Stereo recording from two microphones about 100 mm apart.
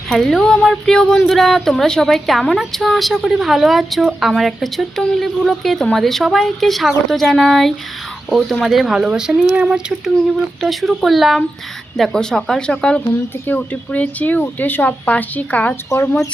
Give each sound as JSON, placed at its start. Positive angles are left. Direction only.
{"t": 0.1, "sound": "speech", "side_deg": 5}
{"t": 10.6, "sound": "speech", "side_deg": 0}
{"t": 15.9, "sound": "speech", "side_deg": 35}